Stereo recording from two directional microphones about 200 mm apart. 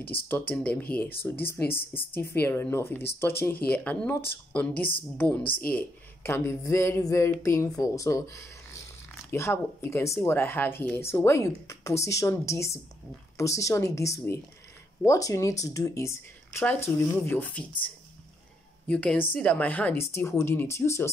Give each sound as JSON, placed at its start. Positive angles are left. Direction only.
{"t": 0.3, "sound": "speech", "side_deg": 10}
{"t": 18.9, "sound": "a woman's voice", "side_deg": 5}